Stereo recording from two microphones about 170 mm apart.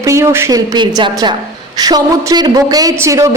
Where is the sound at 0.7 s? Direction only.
25° right (ahead or behind).